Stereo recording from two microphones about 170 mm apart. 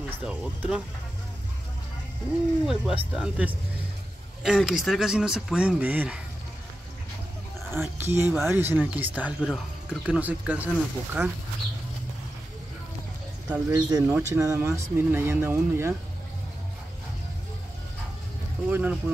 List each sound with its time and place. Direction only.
0.2 s speech: 5° right (ahead or behind)
2.6 s speech: 5° right (ahead or behind)
7.7 s speech: 15° right (ahead or behind)
13.5 s speech: 20° right (ahead or behind)
14.0 s speech: 10° right (ahead or behind)
14.4 s speech: 20° right (ahead or behind)
18.7 s speech: 10° right (ahead or behind)